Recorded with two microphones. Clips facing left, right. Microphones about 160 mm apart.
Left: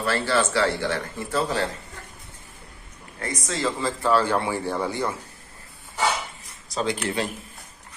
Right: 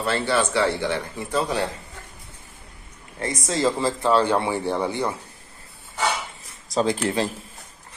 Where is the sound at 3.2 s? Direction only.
25° right (ahead or behind).